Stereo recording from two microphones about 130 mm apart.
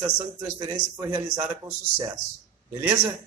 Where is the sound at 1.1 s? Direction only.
25° right (ahead or behind).